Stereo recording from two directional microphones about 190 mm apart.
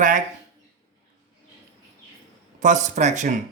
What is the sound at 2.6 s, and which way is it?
Speech, 40° right (ahead or behind).